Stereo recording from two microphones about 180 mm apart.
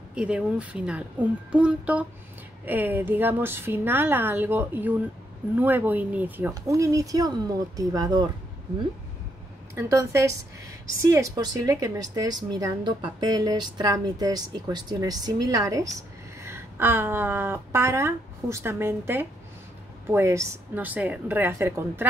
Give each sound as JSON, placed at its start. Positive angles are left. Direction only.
{"t": 0.1, "sound": "a woman's voice", "side_deg": -5}
{"t": 9.8, "sound": "a woman's voice", "side_deg": -15}